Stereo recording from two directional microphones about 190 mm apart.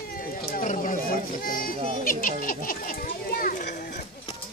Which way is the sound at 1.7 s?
30° right (ahead or behind).